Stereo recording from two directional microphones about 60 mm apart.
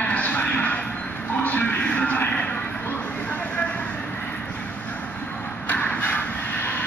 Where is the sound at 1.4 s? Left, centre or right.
Left.